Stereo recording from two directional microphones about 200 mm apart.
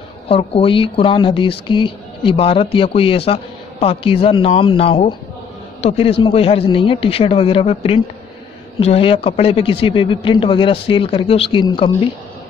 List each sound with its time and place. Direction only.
0.3 s a man's voice: 30° left (ahead or behind)